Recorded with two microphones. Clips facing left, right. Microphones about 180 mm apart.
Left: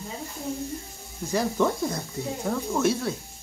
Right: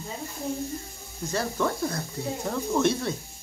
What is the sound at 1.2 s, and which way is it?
Speech, 15° left (ahead or behind).